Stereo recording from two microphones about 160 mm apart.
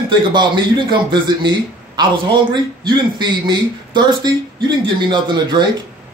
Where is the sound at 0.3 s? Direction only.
30° right (ahead or behind).